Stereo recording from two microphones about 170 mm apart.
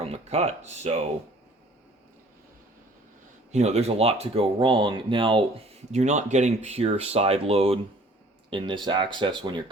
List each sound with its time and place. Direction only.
0.0 s speech: 35° right (ahead or behind)
3.5 s speech: 40° right (ahead or behind)
5.9 s speech: 45° right (ahead or behind)